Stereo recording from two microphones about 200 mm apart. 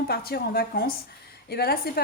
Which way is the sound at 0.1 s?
50° left (ahead or behind).